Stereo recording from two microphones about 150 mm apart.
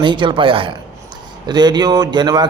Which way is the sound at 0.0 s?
30° right (ahead or behind).